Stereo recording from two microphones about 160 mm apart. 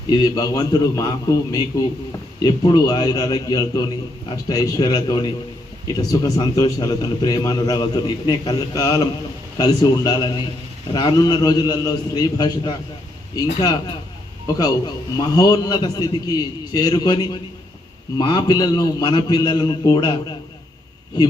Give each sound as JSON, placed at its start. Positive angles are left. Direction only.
{"t": 0.1, "sound": "a man's voice", "side_deg": 25}